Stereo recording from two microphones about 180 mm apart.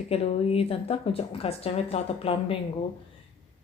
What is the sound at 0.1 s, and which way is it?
A woman's voice, 35° left (ahead or behind).